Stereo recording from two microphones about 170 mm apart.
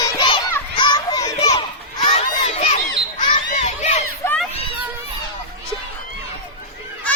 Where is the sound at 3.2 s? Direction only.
45° left (ahead or behind).